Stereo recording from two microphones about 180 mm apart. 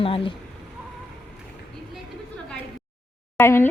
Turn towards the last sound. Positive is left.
turn(degrees=15)  # may be behind; listen again after turning